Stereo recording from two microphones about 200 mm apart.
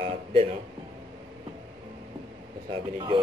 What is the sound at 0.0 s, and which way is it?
Speech, 25° right (ahead or behind).